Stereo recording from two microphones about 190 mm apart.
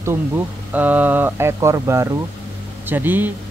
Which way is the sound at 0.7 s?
10° right (ahead or behind).